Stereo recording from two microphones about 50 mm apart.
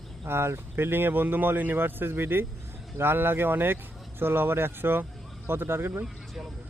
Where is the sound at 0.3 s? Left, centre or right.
Right.